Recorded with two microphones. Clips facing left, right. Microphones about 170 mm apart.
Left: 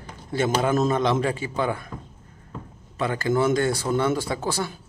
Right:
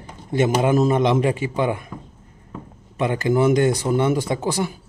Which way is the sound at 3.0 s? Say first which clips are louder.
Right 4 dB; 20° right (ahead or behind).